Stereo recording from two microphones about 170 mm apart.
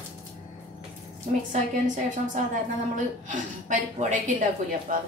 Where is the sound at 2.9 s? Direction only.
45° right (ahead or behind).